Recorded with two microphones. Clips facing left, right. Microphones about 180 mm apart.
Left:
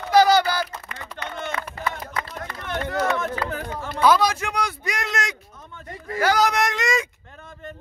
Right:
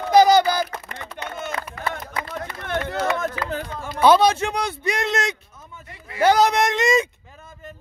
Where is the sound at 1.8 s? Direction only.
30° left (ahead or behind).